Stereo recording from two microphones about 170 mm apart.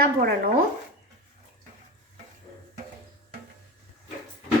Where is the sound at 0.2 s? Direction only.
65° right (ahead or behind).